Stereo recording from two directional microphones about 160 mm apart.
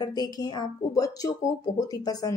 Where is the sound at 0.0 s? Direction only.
25° left (ahead or behind).